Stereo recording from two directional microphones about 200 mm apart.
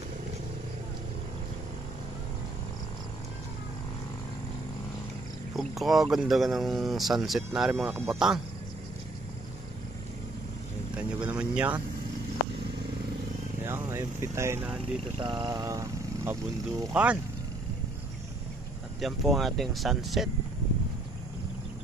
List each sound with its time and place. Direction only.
5.5 s speech: centre (ahead or behind)
11.0 s a sound: 5° right (ahead or behind)
13.7 s speech: 15° right (ahead or behind)
14.8 s speech: 25° right (ahead or behind); by 17.2 s 5° right (ahead or behind)
18.9 s speech: centre (ahead or behind)